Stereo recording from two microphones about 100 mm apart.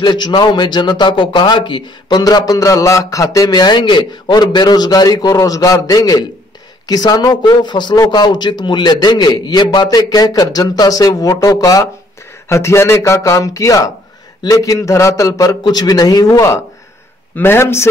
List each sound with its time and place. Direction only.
0.0 s a man's voice: 50° left (ahead or behind); by 17.8 s 25° left (ahead or behind)